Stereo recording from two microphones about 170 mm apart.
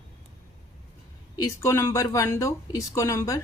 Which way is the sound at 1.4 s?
15° left (ahead or behind).